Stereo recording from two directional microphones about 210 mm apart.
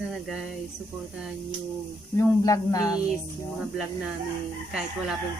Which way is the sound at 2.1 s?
15° left (ahead or behind).